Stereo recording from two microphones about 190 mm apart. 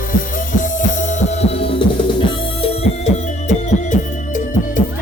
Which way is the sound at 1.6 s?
30° left (ahead or behind).